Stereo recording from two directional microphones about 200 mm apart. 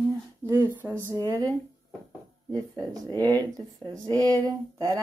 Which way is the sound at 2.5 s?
15° right (ahead or behind).